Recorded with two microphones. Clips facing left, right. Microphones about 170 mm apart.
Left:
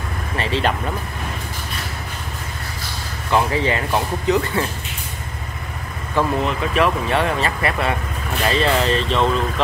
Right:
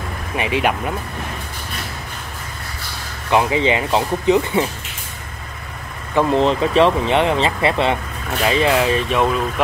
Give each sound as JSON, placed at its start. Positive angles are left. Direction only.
{"t": 0.4, "sound": "speech", "side_deg": -15}
{"t": 3.3, "sound": "speech", "side_deg": -15}
{"t": 6.1, "sound": "speech", "side_deg": -30}
{"t": 8.5, "sound": "speech", "side_deg": -15}